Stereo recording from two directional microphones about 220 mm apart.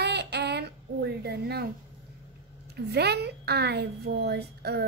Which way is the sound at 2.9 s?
50° right (ahead or behind).